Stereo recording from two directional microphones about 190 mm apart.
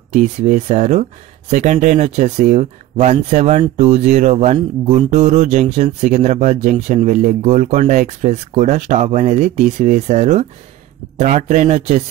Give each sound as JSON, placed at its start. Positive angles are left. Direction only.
{"t": 0.1, "sound": "speech", "side_deg": -40}